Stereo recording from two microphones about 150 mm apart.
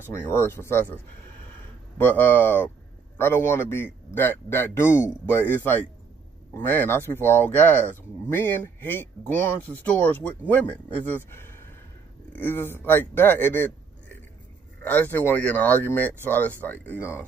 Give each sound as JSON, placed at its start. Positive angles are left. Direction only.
{"t": 0.2, "sound": "speech", "side_deg": 15}
{"t": 2.0, "sound": "speech", "side_deg": 15}
{"t": 6.5, "sound": "speech", "side_deg": 15}
{"t": 14.8, "sound": "speech", "side_deg": 10}